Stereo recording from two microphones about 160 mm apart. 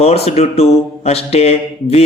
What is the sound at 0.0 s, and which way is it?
Speech, 40° left (ahead or behind).